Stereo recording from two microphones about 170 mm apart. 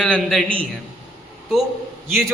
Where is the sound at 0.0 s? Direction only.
5° left (ahead or behind).